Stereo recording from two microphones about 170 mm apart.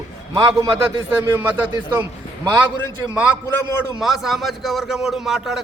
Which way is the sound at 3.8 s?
Centre (ahead or behind).